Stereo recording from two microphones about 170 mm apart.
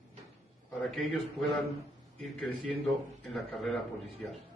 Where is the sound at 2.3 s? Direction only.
Centre (ahead or behind).